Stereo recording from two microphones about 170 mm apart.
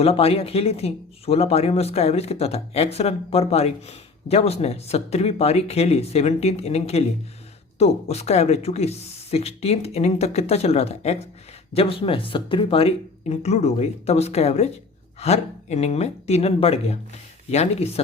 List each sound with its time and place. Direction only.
0.0 s speech: 35° left (ahead or behind)